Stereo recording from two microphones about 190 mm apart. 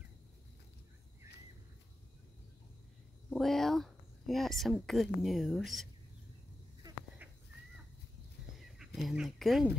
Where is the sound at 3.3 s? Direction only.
Centre (ahead or behind).